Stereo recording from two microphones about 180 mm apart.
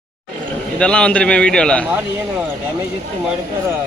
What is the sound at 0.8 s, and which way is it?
A man's voice, 5° left (ahead or behind).